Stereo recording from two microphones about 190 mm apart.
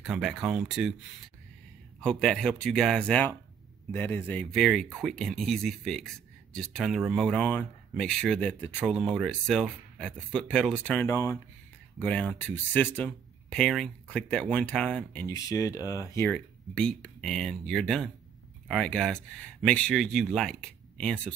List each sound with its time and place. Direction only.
0.0 s speech: centre (ahead or behind)
2.0 s speech: 5° left (ahead or behind)
15.2 s speech: 15° left (ahead or behind)